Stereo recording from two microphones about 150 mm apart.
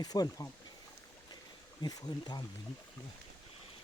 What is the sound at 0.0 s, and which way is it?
Speech, 25° left (ahead or behind).